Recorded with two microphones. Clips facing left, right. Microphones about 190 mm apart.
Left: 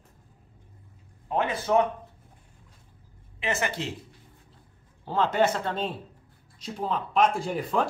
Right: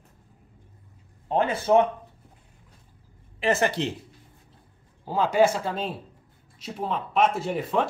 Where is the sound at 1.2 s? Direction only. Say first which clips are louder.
Right 4 dB; 30° right (ahead or behind).